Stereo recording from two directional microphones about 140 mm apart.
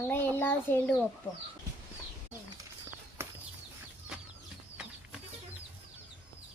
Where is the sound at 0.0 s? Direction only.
15° left (ahead or behind).